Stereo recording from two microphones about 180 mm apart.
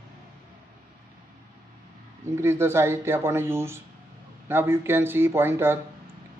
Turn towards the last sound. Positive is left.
turn(degrees=-15)  # may be behind; listen again after turning